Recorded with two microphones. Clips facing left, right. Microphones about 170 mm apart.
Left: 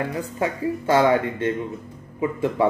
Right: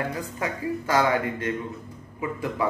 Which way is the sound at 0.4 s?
30° left (ahead or behind).